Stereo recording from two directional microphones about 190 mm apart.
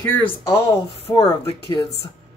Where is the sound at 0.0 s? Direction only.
10° left (ahead or behind).